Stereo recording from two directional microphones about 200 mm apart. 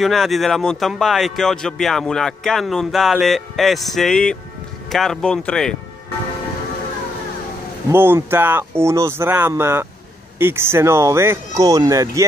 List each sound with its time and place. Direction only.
0.0 s speech: centre (ahead or behind)
7.9 s speech: 10° right (ahead or behind)